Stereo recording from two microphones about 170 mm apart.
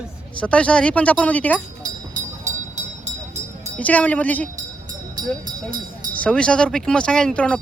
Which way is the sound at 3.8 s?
10° left (ahead or behind).